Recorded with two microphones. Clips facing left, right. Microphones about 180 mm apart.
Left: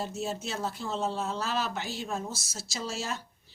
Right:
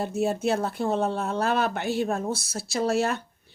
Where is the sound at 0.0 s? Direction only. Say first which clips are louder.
Right 9 dB; 55° right (ahead or behind).